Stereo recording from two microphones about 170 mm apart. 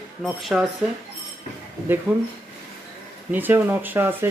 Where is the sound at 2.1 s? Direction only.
10° right (ahead or behind).